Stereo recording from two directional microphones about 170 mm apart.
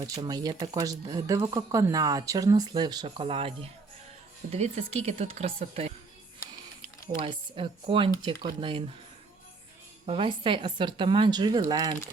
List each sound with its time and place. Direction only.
0.0 s speech: 25° right (ahead or behind)
7.2 s speech: 30° right (ahead or behind)
10.1 s speech: 30° right (ahead or behind)